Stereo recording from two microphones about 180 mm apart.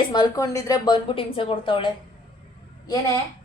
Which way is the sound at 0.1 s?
20° left (ahead or behind).